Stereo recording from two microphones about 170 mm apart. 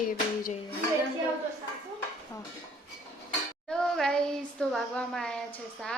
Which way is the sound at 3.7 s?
5° left (ahead or behind).